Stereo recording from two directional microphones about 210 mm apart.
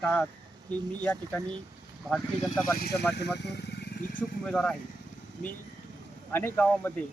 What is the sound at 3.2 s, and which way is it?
Speech, 50° left (ahead or behind).